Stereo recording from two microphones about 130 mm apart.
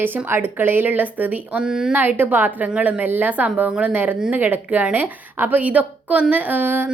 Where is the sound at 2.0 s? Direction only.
15° right (ahead or behind).